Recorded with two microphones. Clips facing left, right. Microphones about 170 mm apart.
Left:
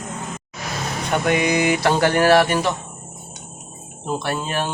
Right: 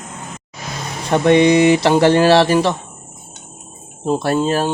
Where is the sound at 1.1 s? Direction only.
30° right (ahead or behind).